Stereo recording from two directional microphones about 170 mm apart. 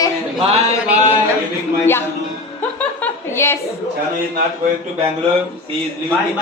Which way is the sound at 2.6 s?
10° left (ahead or behind).